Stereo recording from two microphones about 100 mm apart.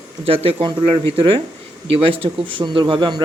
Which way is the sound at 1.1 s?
60° right (ahead or behind).